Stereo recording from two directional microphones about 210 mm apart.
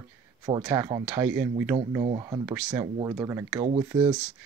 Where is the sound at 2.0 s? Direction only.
20° right (ahead or behind).